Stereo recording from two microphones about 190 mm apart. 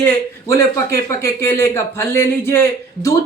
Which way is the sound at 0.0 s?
15° left (ahead or behind).